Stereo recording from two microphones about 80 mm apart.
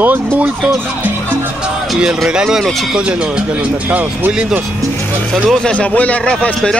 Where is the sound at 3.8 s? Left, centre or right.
Right.